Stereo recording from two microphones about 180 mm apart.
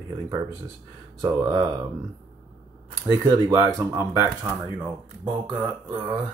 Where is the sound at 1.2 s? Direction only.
20° right (ahead or behind).